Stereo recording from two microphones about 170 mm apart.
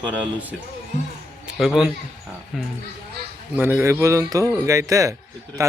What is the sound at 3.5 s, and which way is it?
A man's voice, 10° right (ahead or behind).